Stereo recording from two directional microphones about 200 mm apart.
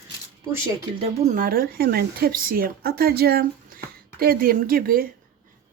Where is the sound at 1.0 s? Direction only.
35° right (ahead or behind).